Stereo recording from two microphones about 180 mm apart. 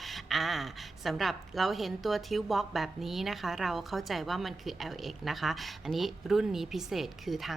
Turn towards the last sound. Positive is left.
turn(degrees=0)  # may be behind; listen again after turning